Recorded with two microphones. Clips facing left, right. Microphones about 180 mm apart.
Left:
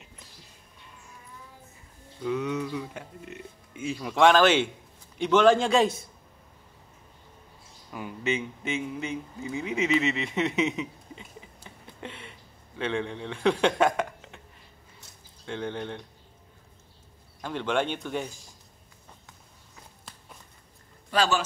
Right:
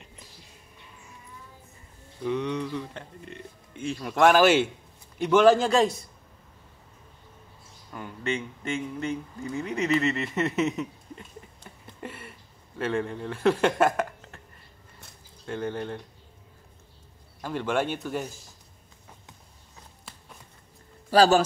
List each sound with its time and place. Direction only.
2.2 s speech: 5° left (ahead or behind)
7.9 s speech: 5° left (ahead or behind)
15.4 s speech: 5° right (ahead or behind)
17.4 s speech: 5° right (ahead or behind)
21.1 s speech: 35° right (ahead or behind)